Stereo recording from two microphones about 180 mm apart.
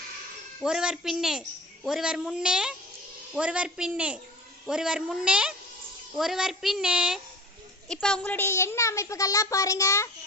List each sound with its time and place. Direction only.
0.6 s a woman's voice: 5° right (ahead or behind); by 10.1 s 15° left (ahead or behind)